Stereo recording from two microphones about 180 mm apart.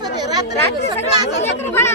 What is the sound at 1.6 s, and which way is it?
Speech, 15° left (ahead or behind).